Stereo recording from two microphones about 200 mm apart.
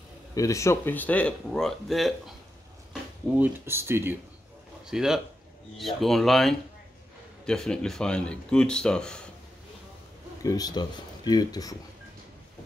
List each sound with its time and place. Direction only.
0.3 s speech: 15° left (ahead or behind)
10.4 s speech: 20° left (ahead or behind)